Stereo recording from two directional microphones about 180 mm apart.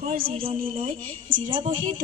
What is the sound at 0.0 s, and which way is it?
Speech, 55° right (ahead or behind).